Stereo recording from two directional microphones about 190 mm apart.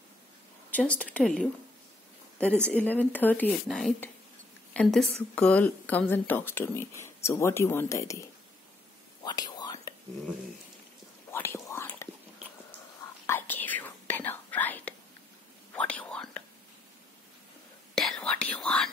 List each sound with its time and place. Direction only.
0.7 s a woman's voice: 5° left (ahead or behind)
9.2 s whispering: 20° left (ahead or behind)
11.3 s whispering: 15° left (ahead or behind)
13.3 s whispering: 10° left (ahead or behind)
17.9 s whispering: centre (ahead or behind)